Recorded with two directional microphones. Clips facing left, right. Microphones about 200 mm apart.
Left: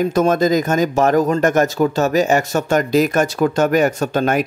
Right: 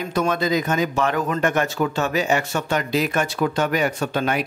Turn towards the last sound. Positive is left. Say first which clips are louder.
# left 5 dB
turn(degrees=45)  # may be behind; listen again after turning